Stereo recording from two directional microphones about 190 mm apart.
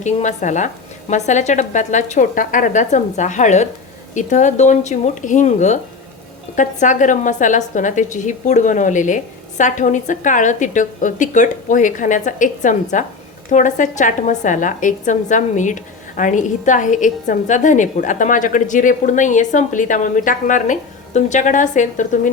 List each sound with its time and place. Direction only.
0.0 s a woman's voice: 40° left (ahead or behind)